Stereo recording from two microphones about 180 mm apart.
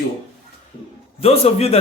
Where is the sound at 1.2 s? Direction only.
35° left (ahead or behind).